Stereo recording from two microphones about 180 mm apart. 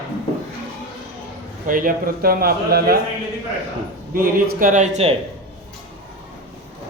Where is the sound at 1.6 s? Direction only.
50° right (ahead or behind).